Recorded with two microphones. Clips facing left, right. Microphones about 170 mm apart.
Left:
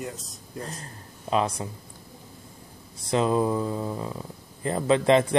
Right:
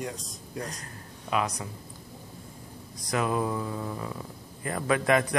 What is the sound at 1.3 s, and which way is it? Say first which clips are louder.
Speech: left 4 dB; 30° left (ahead or behind).